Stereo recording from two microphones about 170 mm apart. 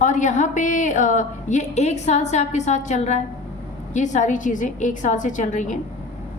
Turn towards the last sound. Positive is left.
turn(degrees=45)  # may be behind; listen again after turning